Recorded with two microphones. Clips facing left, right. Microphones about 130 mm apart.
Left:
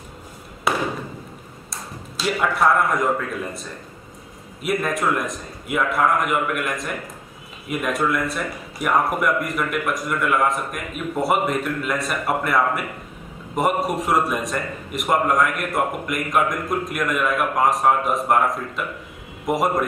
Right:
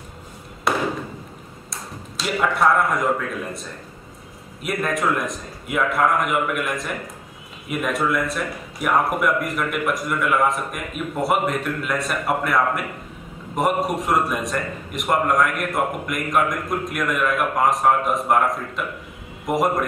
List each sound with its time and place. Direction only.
0.7 s a sound: centre (ahead or behind)
1.7 s speech: centre (ahead or behind)
4.6 s a man's voice: centre (ahead or behind)